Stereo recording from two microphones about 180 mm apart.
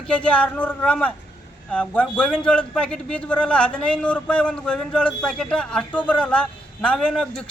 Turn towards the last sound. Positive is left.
turn(degrees=5)  # may be behind; listen again after turning